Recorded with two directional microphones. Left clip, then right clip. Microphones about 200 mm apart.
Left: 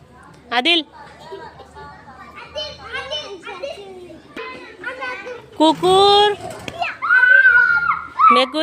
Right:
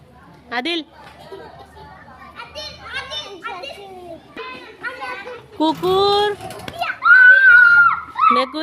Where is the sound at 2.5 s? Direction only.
30° right (ahead or behind).